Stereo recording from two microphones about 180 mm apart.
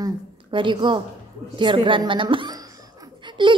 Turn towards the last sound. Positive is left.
turn(degrees=-25)  # may be behind; listen again after turning